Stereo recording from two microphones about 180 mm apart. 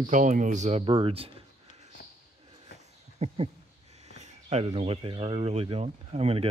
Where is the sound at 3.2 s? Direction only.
40° right (ahead or behind).